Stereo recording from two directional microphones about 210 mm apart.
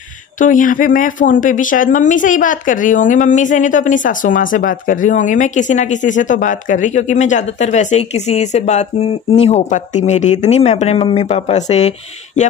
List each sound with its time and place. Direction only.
0.4 s speech: 40° left (ahead or behind)